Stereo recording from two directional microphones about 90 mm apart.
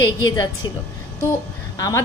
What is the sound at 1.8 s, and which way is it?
Speech, 40° left (ahead or behind).